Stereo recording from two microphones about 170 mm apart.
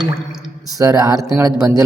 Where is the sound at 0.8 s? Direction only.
20° right (ahead or behind).